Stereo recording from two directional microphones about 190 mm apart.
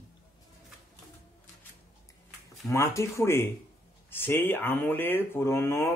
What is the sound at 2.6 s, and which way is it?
Speech, 15° left (ahead or behind).